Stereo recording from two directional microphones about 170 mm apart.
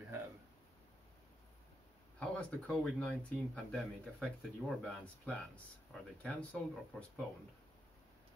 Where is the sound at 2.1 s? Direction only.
5° left (ahead or behind).